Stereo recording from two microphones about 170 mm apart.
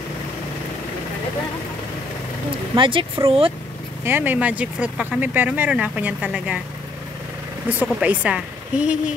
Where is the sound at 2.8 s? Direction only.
30° right (ahead or behind).